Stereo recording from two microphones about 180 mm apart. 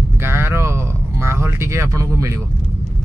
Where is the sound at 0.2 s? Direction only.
15° right (ahead or behind).